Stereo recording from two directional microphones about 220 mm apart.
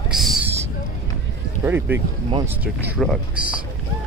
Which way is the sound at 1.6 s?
10° right (ahead or behind).